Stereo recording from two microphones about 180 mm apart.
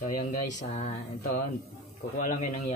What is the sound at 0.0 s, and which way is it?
Speech, 45° left (ahead or behind).